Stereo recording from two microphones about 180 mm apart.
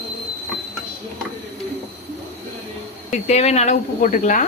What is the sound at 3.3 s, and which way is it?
Speech, 35° left (ahead or behind).